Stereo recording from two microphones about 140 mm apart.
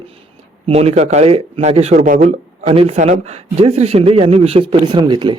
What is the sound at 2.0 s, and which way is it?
Speech, 75° right (ahead or behind).